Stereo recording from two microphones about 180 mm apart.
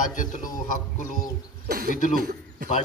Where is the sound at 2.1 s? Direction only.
50° right (ahead or behind).